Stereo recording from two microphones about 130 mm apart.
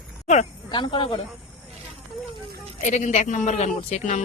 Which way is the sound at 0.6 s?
35° left (ahead or behind).